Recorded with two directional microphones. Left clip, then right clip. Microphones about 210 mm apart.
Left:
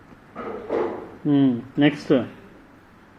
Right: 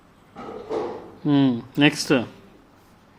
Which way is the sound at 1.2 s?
30° right (ahead or behind).